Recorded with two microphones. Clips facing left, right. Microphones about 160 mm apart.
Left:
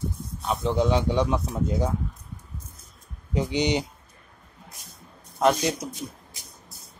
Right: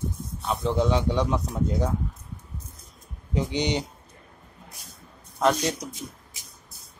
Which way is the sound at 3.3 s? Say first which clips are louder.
Left 2 dB; 10° left (ahead or behind).